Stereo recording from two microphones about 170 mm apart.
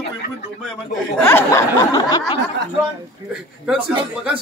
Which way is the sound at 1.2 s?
15° left (ahead or behind).